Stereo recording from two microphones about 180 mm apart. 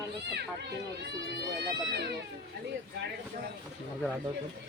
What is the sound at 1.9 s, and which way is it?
Speech, 65° right (ahead or behind).